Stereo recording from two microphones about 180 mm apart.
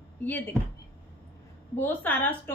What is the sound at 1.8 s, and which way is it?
Speech, 10° left (ahead or behind).